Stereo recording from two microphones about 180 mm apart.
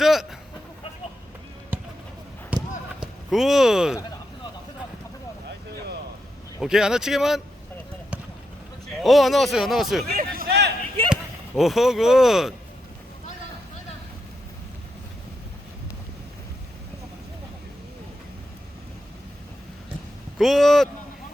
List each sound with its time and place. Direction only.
0.0 s a sound: centre (ahead or behind)
1.7 s basketball bounce: 10° right (ahead or behind)
3.0 s speech: centre (ahead or behind)
6.6 s speech: 5° right (ahead or behind)
9.0 s speech: centre (ahead or behind)
10.1 s a sound: 55° right (ahead or behind)
11.1 s speech: centre (ahead or behind)
20.4 s speech: centre (ahead or behind)